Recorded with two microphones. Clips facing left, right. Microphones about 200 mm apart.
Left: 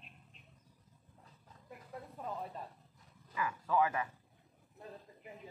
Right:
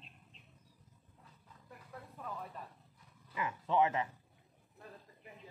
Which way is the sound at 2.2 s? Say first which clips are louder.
Left 3 dB; 25° left (ahead or behind).